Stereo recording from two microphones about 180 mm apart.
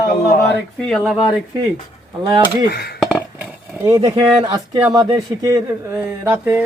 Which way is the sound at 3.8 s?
20° right (ahead or behind).